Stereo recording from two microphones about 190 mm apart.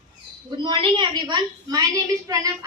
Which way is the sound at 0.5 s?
25° right (ahead or behind).